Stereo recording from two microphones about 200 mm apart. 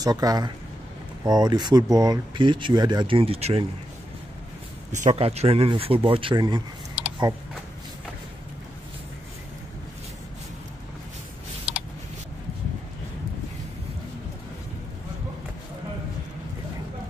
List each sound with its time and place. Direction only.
0.0 s speech: 20° right (ahead or behind)
4.9 s speech: 35° right (ahead or behind)
11.7 s a sound: 5° right (ahead or behind)